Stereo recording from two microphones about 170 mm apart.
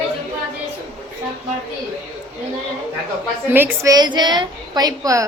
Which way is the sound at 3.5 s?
10° right (ahead or behind).